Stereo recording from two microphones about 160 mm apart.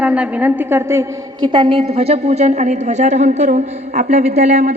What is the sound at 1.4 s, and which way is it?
A woman's voice, 30° right (ahead or behind).